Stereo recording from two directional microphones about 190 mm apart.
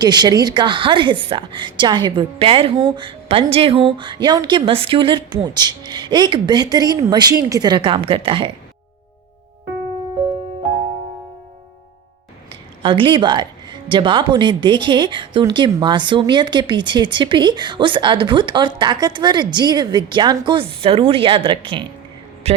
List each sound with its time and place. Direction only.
0.0 s a woman's voice: 20° right (ahead or behind)
12.8 s a woman's voice: 25° right (ahead or behind)